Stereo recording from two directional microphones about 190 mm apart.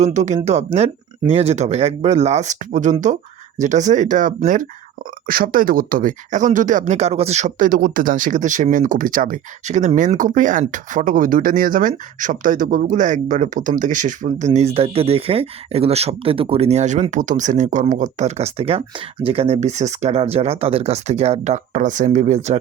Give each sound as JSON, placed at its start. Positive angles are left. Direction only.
{"t": 0.0, "sound": "speech", "side_deg": -40}